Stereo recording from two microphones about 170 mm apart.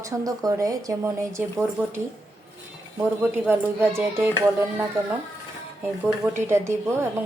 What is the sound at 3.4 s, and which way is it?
Speech, 15° right (ahead or behind).